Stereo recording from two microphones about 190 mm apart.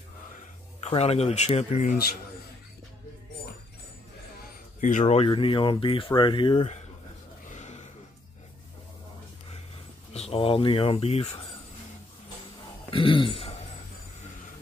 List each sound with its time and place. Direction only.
0.8 s speech: 35° left (ahead or behind)
4.5 s speech: 40° left (ahead or behind)
7.5 s a sound: 35° left (ahead or behind)
10.1 s speech: 30° left (ahead or behind)
12.9 s a man's voice: 25° left (ahead or behind)